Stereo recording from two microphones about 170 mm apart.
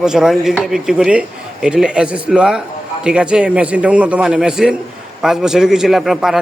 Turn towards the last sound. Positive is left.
turn(degrees=0)  # may be behind; listen again after turning